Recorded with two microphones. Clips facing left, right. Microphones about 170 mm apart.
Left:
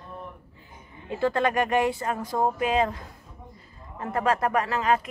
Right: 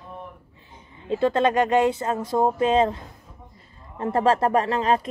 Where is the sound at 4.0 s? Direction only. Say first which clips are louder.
Right 5 dB; 30° right (ahead or behind).